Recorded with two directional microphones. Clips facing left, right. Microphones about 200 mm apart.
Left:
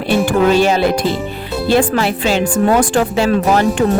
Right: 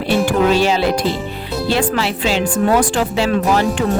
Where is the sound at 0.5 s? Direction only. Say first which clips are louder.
Left 2 dB; 50° left (ahead or behind).